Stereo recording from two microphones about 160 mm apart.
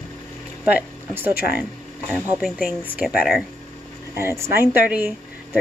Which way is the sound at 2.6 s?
10° right (ahead or behind).